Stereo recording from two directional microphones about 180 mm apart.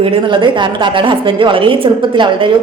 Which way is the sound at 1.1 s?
30° right (ahead or behind).